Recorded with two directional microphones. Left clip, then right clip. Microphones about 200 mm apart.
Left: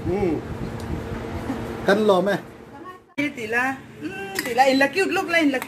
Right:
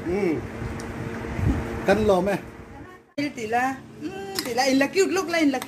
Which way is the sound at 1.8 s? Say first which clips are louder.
Left 2 dB; centre (ahead or behind).